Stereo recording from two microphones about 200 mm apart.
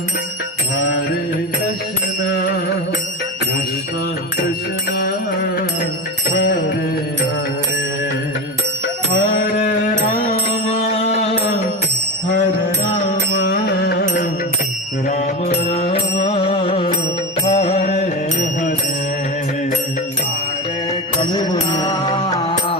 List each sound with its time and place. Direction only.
9.2 s music: 40° left (ahead or behind)
13.5 s music: 50° left (ahead or behind)
15.1 s music: 30° left (ahead or behind)
21.2 s music: 20° left (ahead or behind)